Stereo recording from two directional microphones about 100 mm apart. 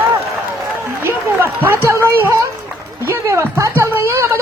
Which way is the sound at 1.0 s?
20° right (ahead or behind).